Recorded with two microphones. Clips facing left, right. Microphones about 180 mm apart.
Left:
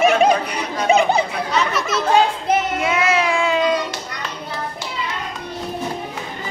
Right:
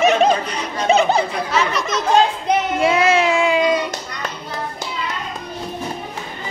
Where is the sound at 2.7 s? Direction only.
30° right (ahead or behind); by 3.8 s 10° right (ahead or behind).